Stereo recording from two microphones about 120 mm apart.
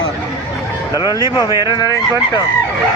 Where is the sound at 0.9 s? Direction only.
30° left (ahead or behind).